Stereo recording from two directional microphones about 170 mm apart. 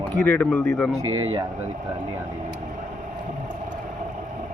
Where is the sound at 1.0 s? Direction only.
25° right (ahead or behind).